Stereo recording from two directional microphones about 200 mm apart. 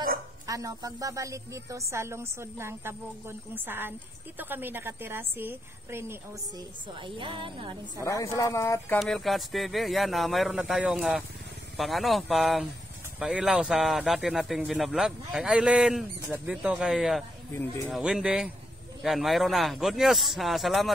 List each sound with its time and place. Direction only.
0.5 s a woman's voice: 15° right (ahead or behind)
6.9 s speech: 25° right (ahead or behind)
8.0 s speech: 15° left (ahead or behind)
9.0 s speech: centre (ahead or behind)